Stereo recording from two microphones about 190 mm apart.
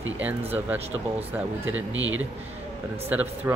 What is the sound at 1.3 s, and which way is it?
Speech, 10° right (ahead or behind).